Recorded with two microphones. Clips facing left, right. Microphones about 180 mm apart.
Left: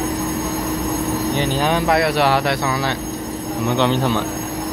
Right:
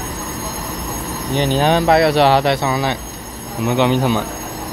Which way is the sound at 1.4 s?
30° right (ahead or behind).